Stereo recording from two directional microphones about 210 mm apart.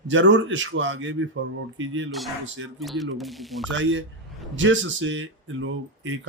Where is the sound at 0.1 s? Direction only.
60° right (ahead or behind).